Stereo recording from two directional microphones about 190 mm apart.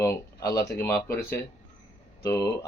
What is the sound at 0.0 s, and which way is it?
Speech, 15° left (ahead or behind).